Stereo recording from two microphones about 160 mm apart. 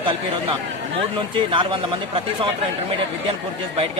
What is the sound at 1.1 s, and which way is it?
A man's voice, 30° right (ahead or behind).